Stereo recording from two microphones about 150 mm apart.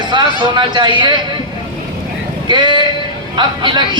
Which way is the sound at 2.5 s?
30° right (ahead or behind).